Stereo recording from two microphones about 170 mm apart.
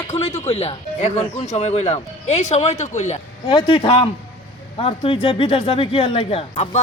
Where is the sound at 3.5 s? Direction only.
30° left (ahead or behind).